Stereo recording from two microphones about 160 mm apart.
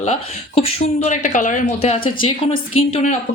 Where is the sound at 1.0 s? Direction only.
50° left (ahead or behind).